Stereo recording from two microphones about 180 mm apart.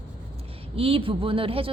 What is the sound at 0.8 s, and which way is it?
Speech, 30° right (ahead or behind).